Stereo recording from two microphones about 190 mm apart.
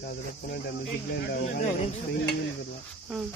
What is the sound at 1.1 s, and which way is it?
Speech, 55° left (ahead or behind).